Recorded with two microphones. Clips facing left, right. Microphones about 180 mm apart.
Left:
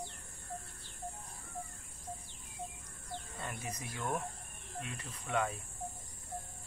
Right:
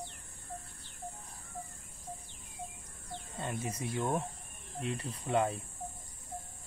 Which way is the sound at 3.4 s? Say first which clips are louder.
Right 8 dB; 25° right (ahead or behind).